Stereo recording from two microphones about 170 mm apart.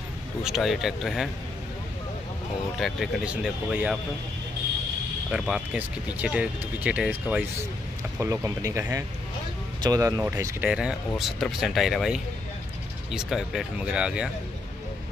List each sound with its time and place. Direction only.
0.4 s speech: centre (ahead or behind)
2.8 s speech: centre (ahead or behind)
5.3 s speech: 5° right (ahead or behind)
8.2 s speech: 15° right (ahead or behind)